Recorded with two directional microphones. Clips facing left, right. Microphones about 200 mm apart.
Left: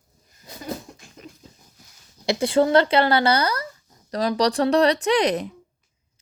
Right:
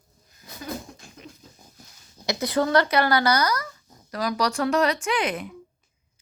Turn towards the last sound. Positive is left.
turn(degrees=40)  # may be behind; listen again after turning